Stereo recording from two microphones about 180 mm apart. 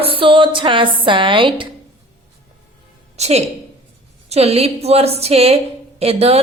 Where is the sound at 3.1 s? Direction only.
35° right (ahead or behind).